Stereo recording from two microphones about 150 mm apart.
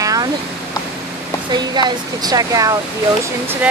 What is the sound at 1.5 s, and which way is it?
Speech, 30° right (ahead or behind).